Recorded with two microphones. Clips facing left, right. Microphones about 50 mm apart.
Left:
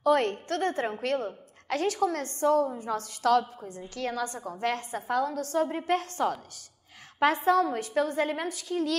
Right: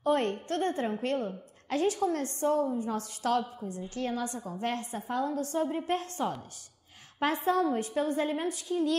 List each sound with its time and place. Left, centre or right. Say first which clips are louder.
0.0 s a woman's voice: left 3 dB; left
2.4 s a woman's voice: left 4 dB; left
7.4 s a woman's voice: left 3 dB; left